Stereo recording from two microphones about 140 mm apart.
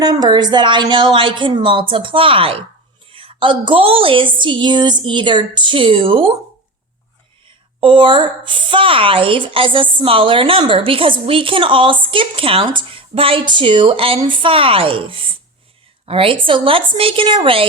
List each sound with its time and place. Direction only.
0.0 s a woman's voice: 30° right (ahead or behind)
7.4 s a woman's voice: 35° right (ahead or behind)